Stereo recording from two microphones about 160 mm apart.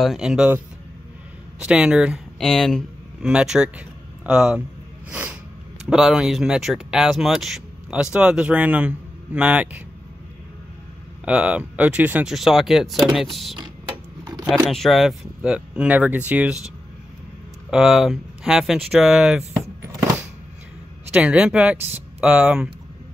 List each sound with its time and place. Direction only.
0.0 s speech: centre (ahead or behind)
1.6 s speech: 5° right (ahead or behind)
5.1 s snort: 10° right (ahead or behind)
5.9 s speech: 5° right (ahead or behind)
11.2 s speech: 5° right (ahead or behind)
14.2 s a sound: 25° right (ahead or behind)
14.5 s speech: centre (ahead or behind)
17.6 s speech: centre (ahead or behind)
19.8 s a sound: 15° right (ahead or behind)
21.1 s speech: 5° right (ahead or behind)